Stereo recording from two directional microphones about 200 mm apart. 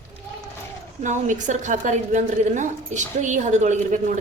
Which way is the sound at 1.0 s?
40° right (ahead or behind).